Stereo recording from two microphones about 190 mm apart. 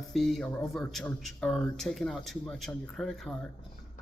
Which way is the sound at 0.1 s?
Centre (ahead or behind).